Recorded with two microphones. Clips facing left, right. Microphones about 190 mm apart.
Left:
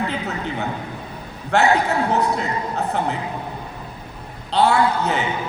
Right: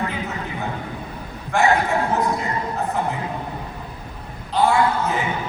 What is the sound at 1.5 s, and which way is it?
Speech, 70° left (ahead or behind).